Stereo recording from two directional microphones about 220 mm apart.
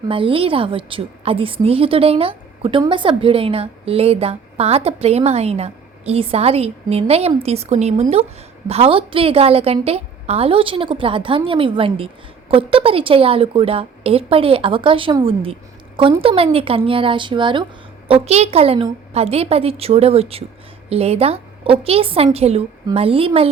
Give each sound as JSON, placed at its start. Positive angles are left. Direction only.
{"t": 0.1, "sound": "a woman's voice", "side_deg": -25}